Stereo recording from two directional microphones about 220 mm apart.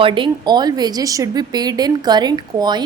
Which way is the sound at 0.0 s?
20° right (ahead or behind).